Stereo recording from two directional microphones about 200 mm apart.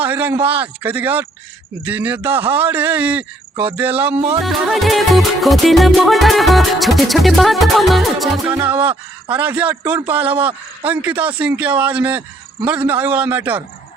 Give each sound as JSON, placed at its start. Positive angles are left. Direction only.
{"t": 0.0, "sound": "speech", "side_deg": -10}
{"t": 3.5, "sound": "cricket", "side_deg": -25}
{"t": 3.8, "sound": "speech", "side_deg": -10}
{"t": 4.4, "sound": "music", "side_deg": 0}
{"t": 8.5, "sound": "speech", "side_deg": -10}